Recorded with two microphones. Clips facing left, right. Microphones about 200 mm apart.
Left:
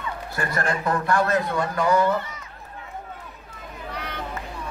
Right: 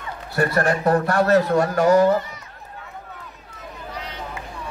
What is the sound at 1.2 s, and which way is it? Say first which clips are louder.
Speech: right 7 dB; 75° right (ahead or behind).